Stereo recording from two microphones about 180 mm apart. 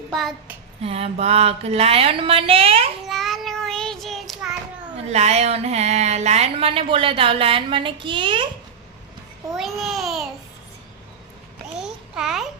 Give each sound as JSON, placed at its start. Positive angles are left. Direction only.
{"t": 0.1, "sound": "child singing", "side_deg": 0}
{"t": 0.8, "sound": "a woman's voice", "side_deg": -35}
{"t": 3.1, "sound": "child singing", "side_deg": 0}
{"t": 5.0, "sound": "a woman's voice", "side_deg": -35}
{"t": 9.6, "sound": "a child's voice", "side_deg": 0}
{"t": 11.8, "sound": "a sound", "side_deg": -5}